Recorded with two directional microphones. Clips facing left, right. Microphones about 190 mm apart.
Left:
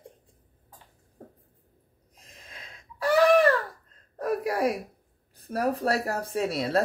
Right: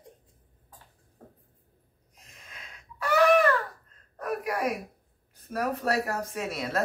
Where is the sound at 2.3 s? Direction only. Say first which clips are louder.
Left 2 dB; 30° left (ahead or behind).